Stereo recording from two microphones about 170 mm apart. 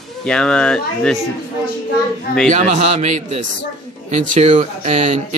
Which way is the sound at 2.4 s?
45° right (ahead or behind).